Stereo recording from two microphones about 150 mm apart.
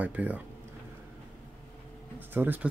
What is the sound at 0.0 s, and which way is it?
Speech, 10° right (ahead or behind).